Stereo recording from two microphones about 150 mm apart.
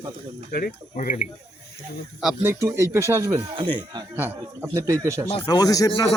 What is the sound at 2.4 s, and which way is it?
Speech, 20° right (ahead or behind).